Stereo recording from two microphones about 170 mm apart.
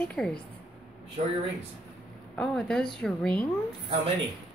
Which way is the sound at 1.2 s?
45° right (ahead or behind).